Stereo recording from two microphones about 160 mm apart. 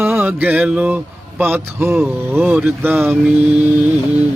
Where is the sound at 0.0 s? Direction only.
15° right (ahead or behind).